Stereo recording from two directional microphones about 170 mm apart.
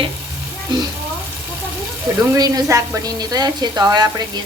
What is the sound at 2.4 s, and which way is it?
A woman's voice, 20° right (ahead or behind).